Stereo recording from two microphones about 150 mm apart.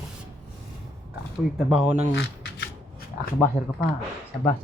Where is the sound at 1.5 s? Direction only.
5° right (ahead or behind).